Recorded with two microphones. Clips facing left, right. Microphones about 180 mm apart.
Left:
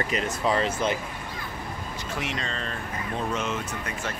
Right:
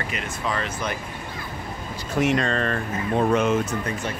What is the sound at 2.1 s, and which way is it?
Speech, 50° right (ahead or behind).